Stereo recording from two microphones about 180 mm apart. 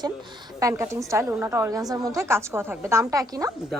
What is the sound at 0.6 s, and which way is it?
A woman's voice, 15° right (ahead or behind).